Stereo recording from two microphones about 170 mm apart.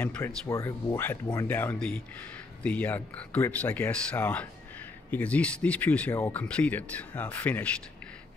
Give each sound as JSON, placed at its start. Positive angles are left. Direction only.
{"t": 0.0, "sound": "speech", "side_deg": 15}
{"t": 1.6, "sound": "speech", "side_deg": 10}